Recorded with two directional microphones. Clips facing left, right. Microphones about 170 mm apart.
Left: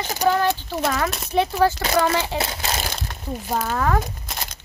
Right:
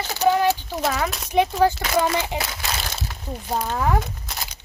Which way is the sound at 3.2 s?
5° left (ahead or behind).